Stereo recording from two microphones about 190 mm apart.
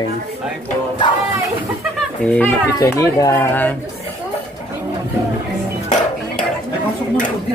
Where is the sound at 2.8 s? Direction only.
15° left (ahead or behind).